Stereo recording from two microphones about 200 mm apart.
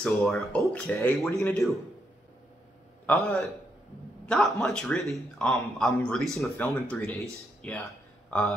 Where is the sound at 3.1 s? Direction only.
5° left (ahead or behind).